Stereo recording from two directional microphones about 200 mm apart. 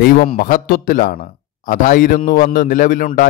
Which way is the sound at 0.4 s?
45° left (ahead or behind).